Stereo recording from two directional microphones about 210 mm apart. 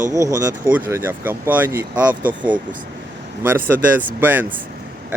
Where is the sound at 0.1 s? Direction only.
15° right (ahead or behind).